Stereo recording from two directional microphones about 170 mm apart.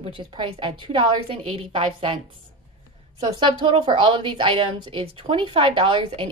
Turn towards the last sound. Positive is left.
turn(degrees=-30)  # may be behind; listen again after turning